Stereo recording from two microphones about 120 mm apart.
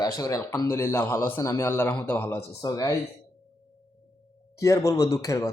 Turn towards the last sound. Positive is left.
turn(degrees=25)  # may be behind; listen again after turning